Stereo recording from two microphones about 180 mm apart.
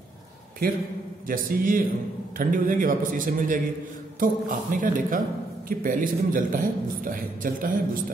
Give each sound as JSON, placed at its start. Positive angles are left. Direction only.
{"t": 0.6, "sound": "a man's voice", "side_deg": -60}